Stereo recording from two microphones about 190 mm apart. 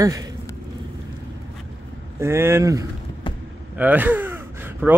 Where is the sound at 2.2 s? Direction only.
15° right (ahead or behind).